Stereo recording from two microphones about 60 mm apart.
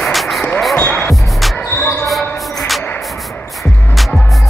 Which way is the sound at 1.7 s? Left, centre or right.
Left.